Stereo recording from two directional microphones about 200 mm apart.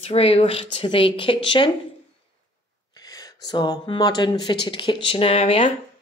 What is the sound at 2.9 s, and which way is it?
A woman's voice, 20° left (ahead or behind).